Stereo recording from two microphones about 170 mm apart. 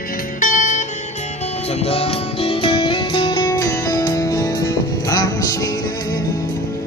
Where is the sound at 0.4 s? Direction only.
50° left (ahead or behind).